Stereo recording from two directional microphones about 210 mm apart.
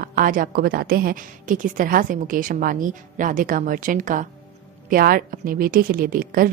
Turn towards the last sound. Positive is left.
turn(degrees=-40)  # may be behind; listen again after turning